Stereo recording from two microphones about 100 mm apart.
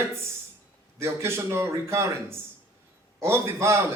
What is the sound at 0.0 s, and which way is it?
A man's voice, 25° right (ahead or behind).